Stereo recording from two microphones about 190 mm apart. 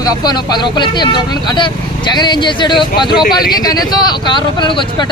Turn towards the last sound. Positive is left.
turn(degrees=25)  # may be behind; listen again after turning